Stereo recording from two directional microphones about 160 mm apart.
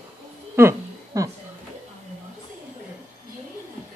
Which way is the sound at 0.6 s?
20° right (ahead or behind).